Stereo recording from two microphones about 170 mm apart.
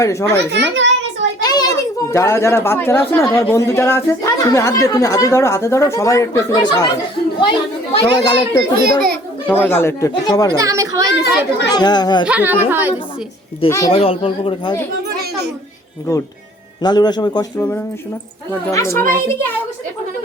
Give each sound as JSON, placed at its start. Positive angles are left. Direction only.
{"t": 0.0, "sound": "speech", "side_deg": 15}
{"t": 0.5, "sound": "child singing", "side_deg": -90}
{"t": 1.4, "sound": "a child's voice", "side_deg": 25}
{"t": 8.8, "sound": "a child's voice", "side_deg": -60}
{"t": 9.5, "sound": "speech", "side_deg": 10}
{"t": 10.5, "sound": "a child's voice", "side_deg": -20}
{"t": 11.7, "sound": "a child's voice", "side_deg": 25}
{"t": 12.2, "sound": "a woman's voice", "side_deg": -10}
{"t": 13.7, "sound": "speech", "side_deg": 15}
{"t": 13.9, "sound": "speech", "side_deg": 35}
{"t": 16.8, "sound": "a child's voice", "side_deg": 25}
{"t": 17.6, "sound": "speech", "side_deg": 10}